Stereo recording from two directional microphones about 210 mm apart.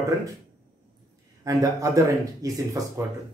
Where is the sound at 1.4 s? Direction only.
15° right (ahead or behind).